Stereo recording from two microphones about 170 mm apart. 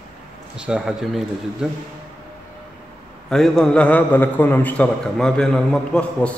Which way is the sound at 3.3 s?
5° left (ahead or behind).